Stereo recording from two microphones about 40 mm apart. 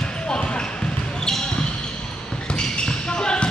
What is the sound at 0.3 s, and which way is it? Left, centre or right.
Basketball bounce, left.